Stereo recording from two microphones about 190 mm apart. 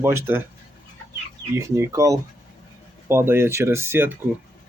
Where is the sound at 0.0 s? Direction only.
10° right (ahead or behind).